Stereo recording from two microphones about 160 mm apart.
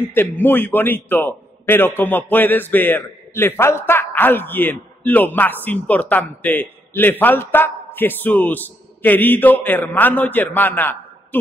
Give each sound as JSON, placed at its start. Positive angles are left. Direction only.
{"t": 0.1, "sound": "a man's voice", "side_deg": 15}